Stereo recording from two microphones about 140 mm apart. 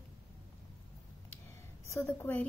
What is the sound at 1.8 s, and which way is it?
Speech, 20° left (ahead or behind).